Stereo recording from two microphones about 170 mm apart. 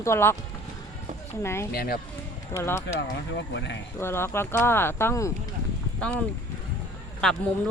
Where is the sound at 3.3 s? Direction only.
90° left.